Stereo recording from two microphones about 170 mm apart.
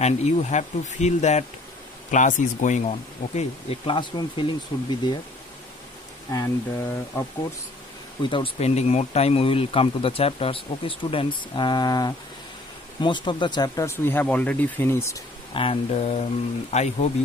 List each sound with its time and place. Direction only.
0.0 s speech: 40° left (ahead or behind)
6.3 s speech: 20° left (ahead or behind)
8.2 s speech: 30° left (ahead or behind)
15.5 s speech: 35° left (ahead or behind)